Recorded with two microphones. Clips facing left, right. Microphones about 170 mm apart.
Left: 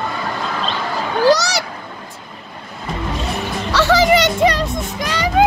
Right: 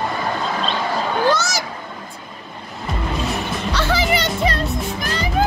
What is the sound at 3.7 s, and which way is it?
Music, 90° left.